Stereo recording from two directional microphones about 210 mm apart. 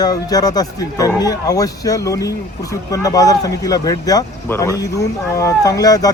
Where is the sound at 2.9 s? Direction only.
15° left (ahead or behind).